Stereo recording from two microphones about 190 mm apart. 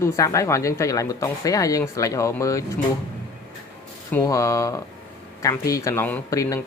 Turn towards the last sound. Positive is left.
turn(degrees=15)  # may be behind; listen again after turning